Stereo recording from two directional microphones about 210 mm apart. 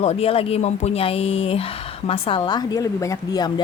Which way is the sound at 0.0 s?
30° left (ahead or behind).